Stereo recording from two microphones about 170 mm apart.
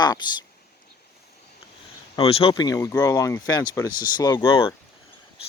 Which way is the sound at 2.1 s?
35° left (ahead or behind).